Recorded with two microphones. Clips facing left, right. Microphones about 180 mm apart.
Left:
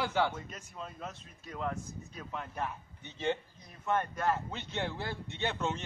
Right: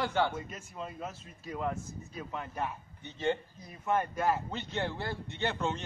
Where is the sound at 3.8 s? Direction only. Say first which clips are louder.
Right 2 dB; 5° right (ahead or behind).